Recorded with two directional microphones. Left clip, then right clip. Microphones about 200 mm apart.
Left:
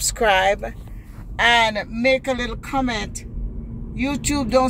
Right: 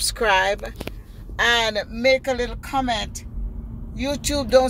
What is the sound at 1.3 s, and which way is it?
Speech, 10° right (ahead or behind).